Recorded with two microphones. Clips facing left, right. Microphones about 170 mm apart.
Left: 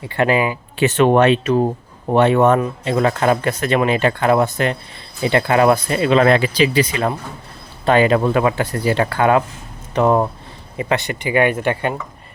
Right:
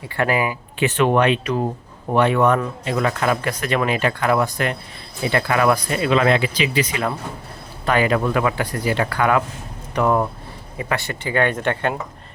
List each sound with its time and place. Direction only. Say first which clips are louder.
0.2 s speech: left 4 dB; 25° left (ahead or behind)
6.2 s speech: left 4 dB; 40° left (ahead or behind); by 11.9 s 10° left (ahead or behind)